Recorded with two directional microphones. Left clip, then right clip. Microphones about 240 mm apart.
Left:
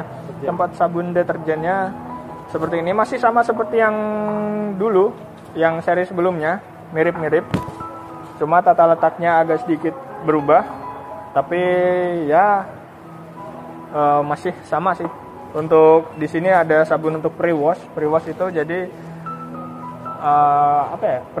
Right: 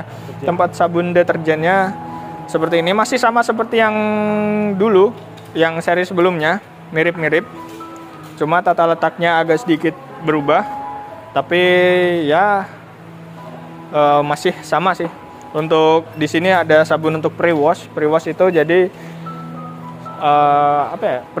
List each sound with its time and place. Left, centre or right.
0.5 s speech: right
13.9 s speech: right
20.2 s speech: right